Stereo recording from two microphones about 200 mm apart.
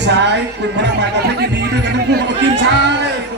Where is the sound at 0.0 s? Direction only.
60° right (ahead or behind).